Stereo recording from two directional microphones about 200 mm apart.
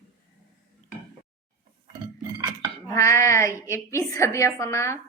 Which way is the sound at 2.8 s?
15° left (ahead or behind).